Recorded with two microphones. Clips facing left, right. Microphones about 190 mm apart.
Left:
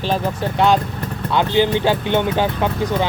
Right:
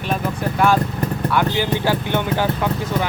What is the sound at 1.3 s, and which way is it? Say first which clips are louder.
Speech: left 5 dB; 20° left (ahead or behind).